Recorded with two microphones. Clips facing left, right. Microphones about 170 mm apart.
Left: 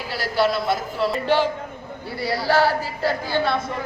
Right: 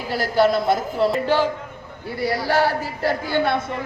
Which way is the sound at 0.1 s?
45° right (ahead or behind).